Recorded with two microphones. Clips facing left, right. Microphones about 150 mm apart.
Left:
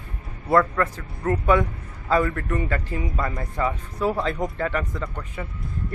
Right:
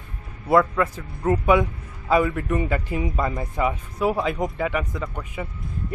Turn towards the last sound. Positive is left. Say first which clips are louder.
# even
turn(degrees=-15)  # may be behind; listen again after turning